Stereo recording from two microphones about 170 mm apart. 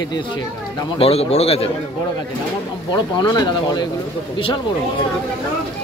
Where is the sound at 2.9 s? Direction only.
25° left (ahead or behind).